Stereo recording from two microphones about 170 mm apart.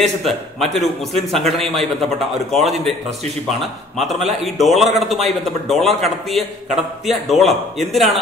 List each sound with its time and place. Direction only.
0.0 s a man's voice: centre (ahead or behind)
2.5 s a man's voice: centre (ahead or behind)
4.0 s a man's voice: centre (ahead or behind)